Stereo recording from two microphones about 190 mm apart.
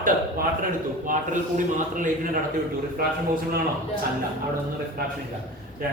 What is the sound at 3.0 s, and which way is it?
Speech, 55° right (ahead or behind).